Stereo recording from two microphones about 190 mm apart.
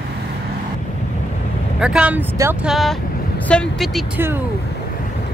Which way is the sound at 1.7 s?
5° right (ahead or behind).